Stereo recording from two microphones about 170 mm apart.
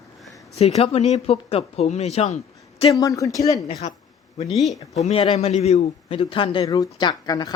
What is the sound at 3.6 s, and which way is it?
Speech, 35° left (ahead or behind).